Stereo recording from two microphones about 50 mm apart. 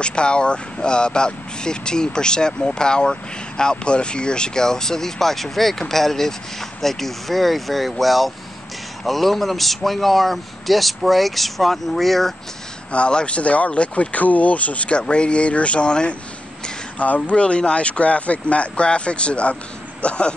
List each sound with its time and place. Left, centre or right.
0.0 s a man's voice: centre
12.9 s speech: left